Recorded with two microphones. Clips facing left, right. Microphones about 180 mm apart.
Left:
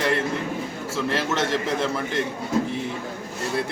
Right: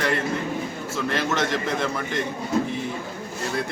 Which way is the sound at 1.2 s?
5° left (ahead or behind).